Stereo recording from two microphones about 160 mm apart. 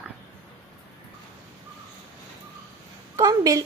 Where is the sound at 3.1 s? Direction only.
20° right (ahead or behind).